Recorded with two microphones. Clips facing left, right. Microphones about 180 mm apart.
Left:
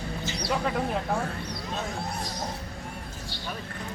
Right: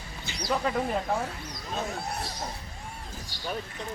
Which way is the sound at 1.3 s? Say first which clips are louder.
Left 5 dB; 65° left (ahead or behind).